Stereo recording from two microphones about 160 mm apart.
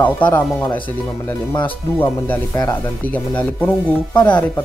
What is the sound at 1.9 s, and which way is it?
Speech, 15° left (ahead or behind).